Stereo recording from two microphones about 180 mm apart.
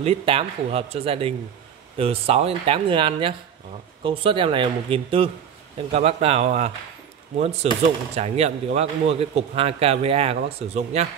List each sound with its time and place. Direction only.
0.0 s a man's voice: 30° right (ahead or behind)